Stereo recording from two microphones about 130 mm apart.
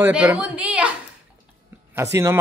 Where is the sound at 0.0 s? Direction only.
15° right (ahead or behind).